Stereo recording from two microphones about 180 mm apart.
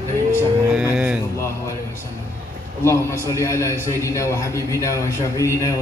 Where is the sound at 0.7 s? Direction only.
5° right (ahead or behind).